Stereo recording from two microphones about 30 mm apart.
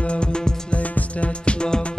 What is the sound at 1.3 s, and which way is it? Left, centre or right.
Music, left.